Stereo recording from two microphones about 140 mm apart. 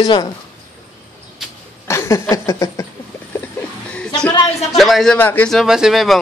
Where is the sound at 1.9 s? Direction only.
20° left (ahead or behind).